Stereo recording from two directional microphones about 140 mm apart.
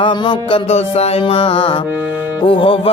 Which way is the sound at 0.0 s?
35° left (ahead or behind).